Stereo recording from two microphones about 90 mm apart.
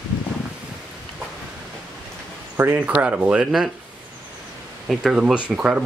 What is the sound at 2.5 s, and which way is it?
Speech, 25° right (ahead or behind).